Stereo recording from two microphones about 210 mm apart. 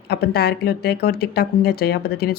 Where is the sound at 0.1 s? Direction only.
50° left (ahead or behind).